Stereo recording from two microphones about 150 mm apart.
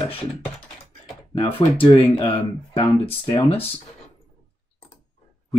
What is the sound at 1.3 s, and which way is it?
Speech, 35° left (ahead or behind).